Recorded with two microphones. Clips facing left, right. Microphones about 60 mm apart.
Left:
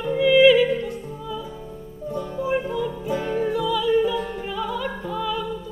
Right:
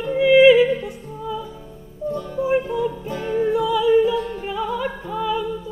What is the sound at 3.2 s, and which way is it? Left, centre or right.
Music, centre.